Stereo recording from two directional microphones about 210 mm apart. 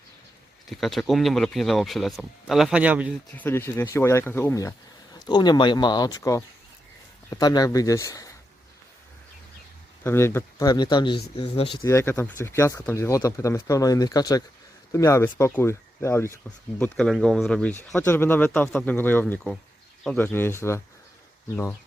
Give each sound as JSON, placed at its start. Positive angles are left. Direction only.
{"t": 0.7, "sound": "speech", "side_deg": 0}
{"t": 3.3, "sound": "speech", "side_deg": 10}
{"t": 10.0, "sound": "speech", "side_deg": 10}
{"t": 11.9, "sound": "speech", "side_deg": 15}